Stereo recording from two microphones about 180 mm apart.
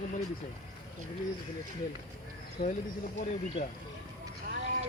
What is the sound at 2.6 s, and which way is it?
Speech, 55° left (ahead or behind).